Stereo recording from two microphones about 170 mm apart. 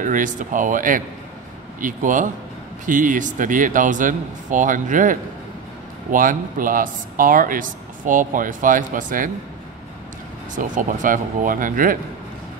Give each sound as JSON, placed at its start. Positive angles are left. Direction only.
{"t": 0.0, "sound": "speech", "side_deg": -50}
{"t": 10.5, "sound": "speech", "side_deg": -50}